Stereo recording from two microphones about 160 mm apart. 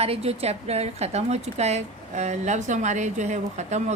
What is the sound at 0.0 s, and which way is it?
A woman's voice, 40° right (ahead or behind).